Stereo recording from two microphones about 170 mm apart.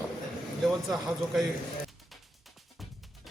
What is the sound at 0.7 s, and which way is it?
Speech, centre (ahead or behind).